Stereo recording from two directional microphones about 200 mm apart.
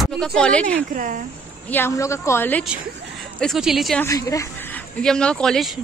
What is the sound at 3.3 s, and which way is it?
Speech, centre (ahead or behind).